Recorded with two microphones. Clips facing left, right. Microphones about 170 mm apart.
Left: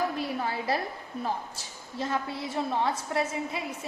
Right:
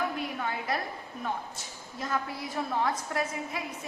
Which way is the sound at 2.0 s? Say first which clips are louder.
Left 2 dB; 25° left (ahead or behind).